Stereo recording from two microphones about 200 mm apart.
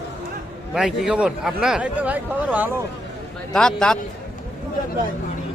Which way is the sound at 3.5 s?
5° left (ahead or behind).